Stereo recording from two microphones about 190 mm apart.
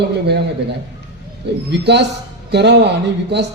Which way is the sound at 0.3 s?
60° right (ahead or behind).